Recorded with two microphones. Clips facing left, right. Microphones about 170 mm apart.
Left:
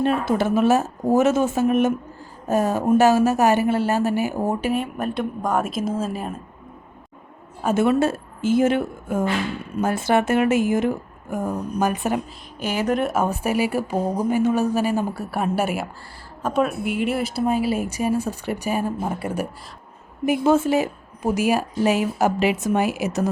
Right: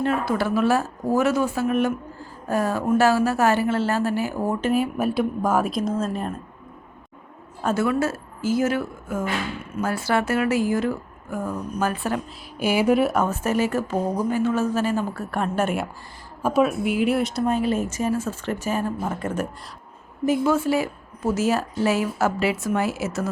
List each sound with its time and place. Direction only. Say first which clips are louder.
0.0 s speech: left 2 dB; 20° left (ahead or behind)
4.7 s a woman's voice: right 2 dB; 5° right (ahead or behind)
7.6 s speech: left 3 dB; 20° left (ahead or behind)
12.5 s speech: right 3 dB; 10° right (ahead or behind)
13.1 s speech: left 1 dB; 15° left (ahead or behind)
16.4 s speech: right 2 dB; 5° right (ahead or behind); by 19.5 s 10° left (ahead or behind)
20.4 s speech: left 6 dB; 25° left (ahead or behind)